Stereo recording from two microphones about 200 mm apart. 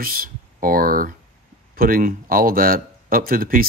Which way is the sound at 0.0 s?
45° right (ahead or behind).